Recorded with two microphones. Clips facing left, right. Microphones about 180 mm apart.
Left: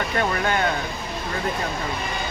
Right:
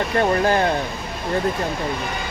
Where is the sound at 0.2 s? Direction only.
30° right (ahead or behind).